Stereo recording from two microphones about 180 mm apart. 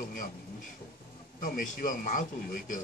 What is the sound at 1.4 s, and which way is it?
A man's voice, 50° left (ahead or behind).